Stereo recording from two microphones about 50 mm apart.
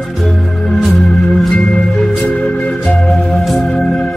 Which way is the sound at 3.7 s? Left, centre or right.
Centre.